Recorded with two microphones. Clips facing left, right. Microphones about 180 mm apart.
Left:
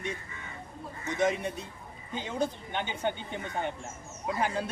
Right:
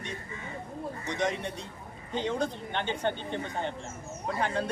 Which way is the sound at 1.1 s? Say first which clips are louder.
Left 4 dB; 5° left (ahead or behind).